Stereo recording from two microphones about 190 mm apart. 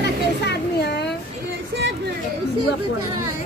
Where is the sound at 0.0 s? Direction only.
60° left (ahead or behind).